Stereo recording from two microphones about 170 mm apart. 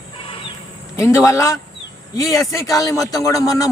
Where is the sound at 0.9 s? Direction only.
20° left (ahead or behind).